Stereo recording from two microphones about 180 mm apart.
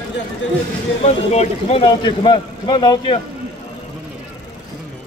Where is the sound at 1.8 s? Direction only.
25° left (ahead or behind).